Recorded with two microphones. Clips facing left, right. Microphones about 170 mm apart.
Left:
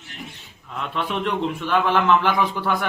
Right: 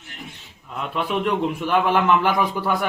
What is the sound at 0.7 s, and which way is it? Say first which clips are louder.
A man's voice: right 2 dB; 5° right (ahead or behind).